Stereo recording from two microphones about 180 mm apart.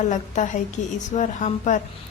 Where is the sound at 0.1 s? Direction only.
45° left (ahead or behind).